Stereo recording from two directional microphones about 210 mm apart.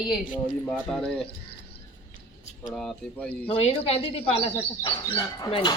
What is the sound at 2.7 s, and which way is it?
Speech, 5° left (ahead or behind).